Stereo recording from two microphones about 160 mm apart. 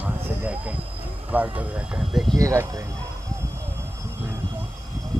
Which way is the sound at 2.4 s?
20° right (ahead or behind).